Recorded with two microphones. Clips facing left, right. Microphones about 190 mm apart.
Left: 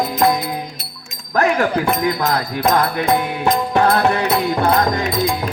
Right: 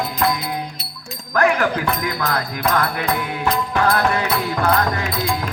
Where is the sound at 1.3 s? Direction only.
30° left (ahead or behind).